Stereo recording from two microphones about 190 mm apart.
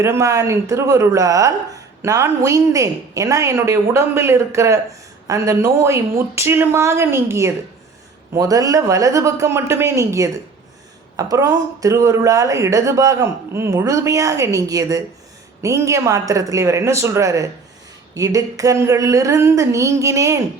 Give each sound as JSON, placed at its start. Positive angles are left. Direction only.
{"t": 0.0, "sound": "speech", "side_deg": -15}